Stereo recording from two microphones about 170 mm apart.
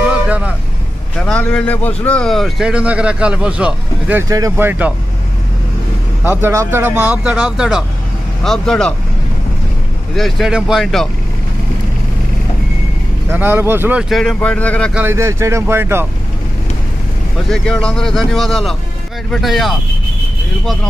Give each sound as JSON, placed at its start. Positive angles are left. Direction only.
{"t": 1.1, "sound": "a man's voice", "side_deg": 5}
{"t": 6.2, "sound": "a man's voice", "side_deg": -10}
{"t": 10.1, "sound": "a man's voice", "side_deg": 0}
{"t": 13.3, "sound": "a man's voice", "side_deg": -10}
{"t": 15.0, "sound": "speech", "side_deg": -15}
{"t": 17.5, "sound": "a man's voice", "side_deg": 5}